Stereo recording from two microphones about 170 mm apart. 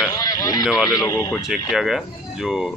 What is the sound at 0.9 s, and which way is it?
Speech, 20° left (ahead or behind).